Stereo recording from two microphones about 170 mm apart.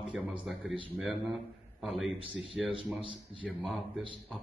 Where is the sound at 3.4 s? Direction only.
Centre (ahead or behind).